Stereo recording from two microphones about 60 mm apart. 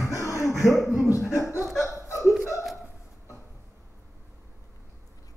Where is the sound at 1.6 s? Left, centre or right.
Centre.